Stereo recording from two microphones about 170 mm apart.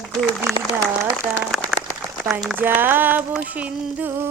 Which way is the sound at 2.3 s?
5° right (ahead or behind).